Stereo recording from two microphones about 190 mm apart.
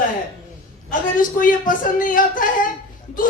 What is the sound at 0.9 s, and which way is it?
A man's voice, 45° left (ahead or behind).